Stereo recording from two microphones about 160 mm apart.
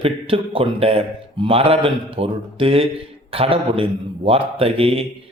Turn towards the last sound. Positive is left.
turn(degrees=-35)  # may be behind; listen again after turning